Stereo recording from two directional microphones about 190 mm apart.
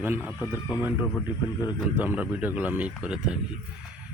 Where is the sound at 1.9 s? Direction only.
10° right (ahead or behind).